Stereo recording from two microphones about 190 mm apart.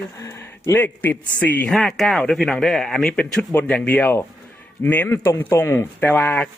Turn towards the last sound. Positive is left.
turn(degrees=10)  # may be behind; listen again after turning